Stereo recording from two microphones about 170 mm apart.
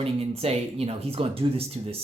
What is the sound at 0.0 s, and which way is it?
Speech, 35° right (ahead or behind).